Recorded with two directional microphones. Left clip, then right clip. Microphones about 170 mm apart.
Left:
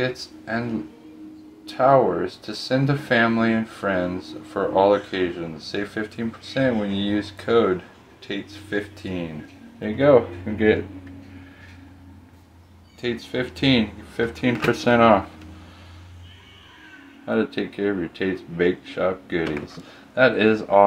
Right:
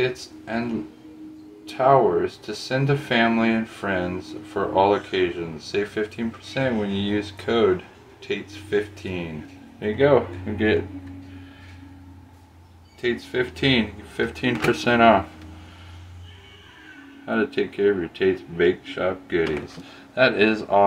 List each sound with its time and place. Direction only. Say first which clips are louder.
0.0 s speech: right 1 dB; 20° left (ahead or behind)
1.7 s speech: even; 20° left (ahead or behind)
13.0 s speech: right 2 dB; 25° left (ahead or behind)
17.3 s speech: even; 25° left (ahead or behind)